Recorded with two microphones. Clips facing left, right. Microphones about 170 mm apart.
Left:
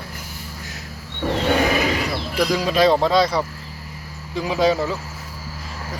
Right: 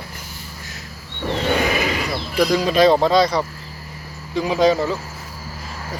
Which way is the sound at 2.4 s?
Centre (ahead or behind).